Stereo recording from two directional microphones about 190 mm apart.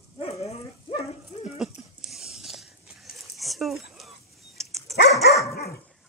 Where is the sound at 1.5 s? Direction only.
Centre (ahead or behind).